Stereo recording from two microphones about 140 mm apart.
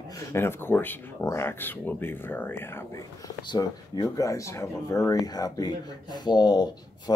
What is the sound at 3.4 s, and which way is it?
Speech, 30° left (ahead or behind).